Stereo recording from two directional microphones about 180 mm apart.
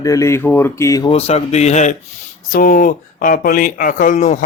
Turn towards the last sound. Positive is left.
turn(degrees=40)  # may be behind; listen again after turning